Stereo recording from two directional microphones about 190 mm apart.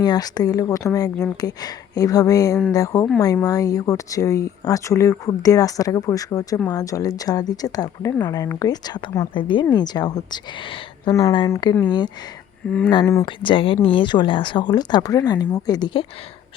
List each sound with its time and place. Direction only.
0.0 s speech: 20° left (ahead or behind)